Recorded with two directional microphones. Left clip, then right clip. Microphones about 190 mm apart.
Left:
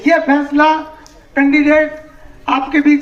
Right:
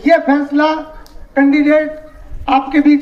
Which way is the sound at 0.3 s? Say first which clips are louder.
Left 2 dB; 75° right (ahead or behind).